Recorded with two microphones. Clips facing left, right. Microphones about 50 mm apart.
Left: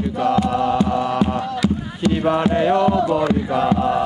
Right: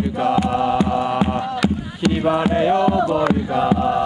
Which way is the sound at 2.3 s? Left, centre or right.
Centre.